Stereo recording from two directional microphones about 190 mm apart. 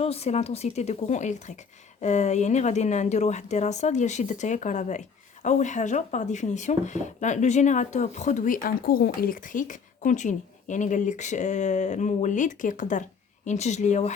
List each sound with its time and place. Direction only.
0.0 s speech: 35° left (ahead or behind)